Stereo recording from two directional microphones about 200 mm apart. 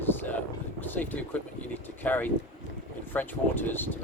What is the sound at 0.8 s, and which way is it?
Vehicle, 10° left (ahead or behind).